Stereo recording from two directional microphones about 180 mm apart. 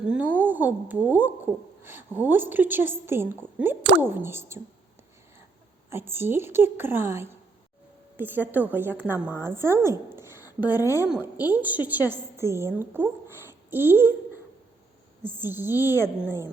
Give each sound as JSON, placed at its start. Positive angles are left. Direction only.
{"t": 0.1, "sound": "a woman's voice", "side_deg": -10}
{"t": 5.9, "sound": "a woman's voice", "side_deg": -10}
{"t": 10.8, "sound": "a woman's voice", "side_deg": 15}
{"t": 11.1, "sound": "a woman's voice", "side_deg": -10}
{"t": 15.2, "sound": "a woman's voice", "side_deg": -10}